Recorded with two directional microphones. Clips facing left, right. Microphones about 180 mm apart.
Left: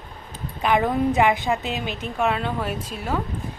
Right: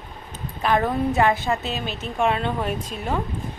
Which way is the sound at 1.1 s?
15° left (ahead or behind).